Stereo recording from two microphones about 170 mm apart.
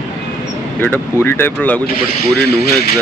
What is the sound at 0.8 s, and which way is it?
Speech, 15° left (ahead or behind).